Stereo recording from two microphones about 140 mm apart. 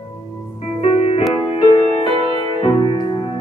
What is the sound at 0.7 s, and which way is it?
Music, 45° left (ahead or behind).